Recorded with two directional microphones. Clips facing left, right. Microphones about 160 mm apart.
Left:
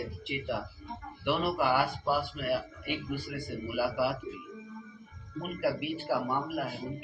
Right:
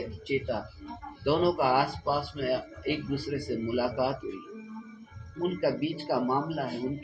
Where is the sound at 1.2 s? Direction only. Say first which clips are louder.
Right 4 dB; 30° right (ahead or behind).